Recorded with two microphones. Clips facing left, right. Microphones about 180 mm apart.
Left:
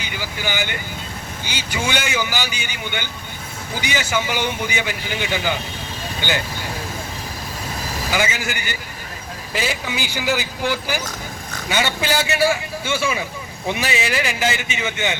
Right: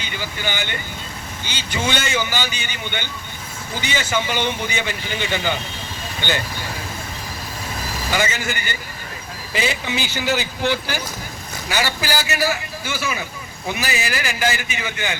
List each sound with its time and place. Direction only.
0.0 s speech: 10° left (ahead or behind)
8.1 s speech: 10° left (ahead or behind)
11.7 s a man's voice: 25° left (ahead or behind)